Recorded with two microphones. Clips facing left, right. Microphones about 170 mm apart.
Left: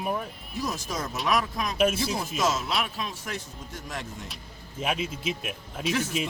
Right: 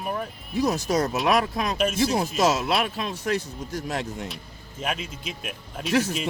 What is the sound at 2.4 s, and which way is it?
Speech, 70° right (ahead or behind).